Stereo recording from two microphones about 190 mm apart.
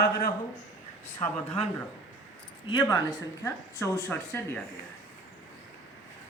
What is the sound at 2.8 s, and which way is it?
A man's voice, 15° left (ahead or behind).